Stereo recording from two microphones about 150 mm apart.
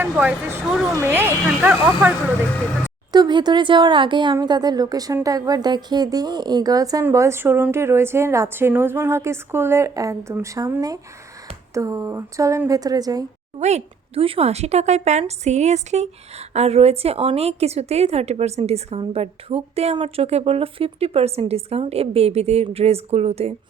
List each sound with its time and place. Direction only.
0.0 s a woman's voice: 10° right (ahead or behind)
3.1 s a woman's voice: 30° right (ahead or behind)
13.6 s a woman's voice: 45° right (ahead or behind)